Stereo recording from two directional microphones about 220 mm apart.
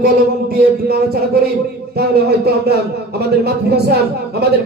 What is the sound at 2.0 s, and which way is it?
Speech, 45° right (ahead or behind).